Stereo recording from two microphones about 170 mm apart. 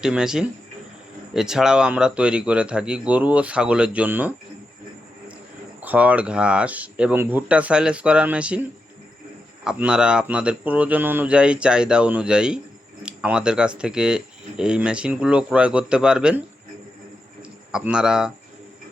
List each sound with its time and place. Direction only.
0.0 s speech: 5° right (ahead or behind)
5.8 s speech: 10° right (ahead or behind)
9.6 s speech: 5° right (ahead or behind)
17.7 s speech: 5° right (ahead or behind)